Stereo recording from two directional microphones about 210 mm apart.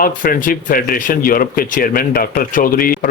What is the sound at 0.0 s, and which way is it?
Speech, 40° left (ahead or behind).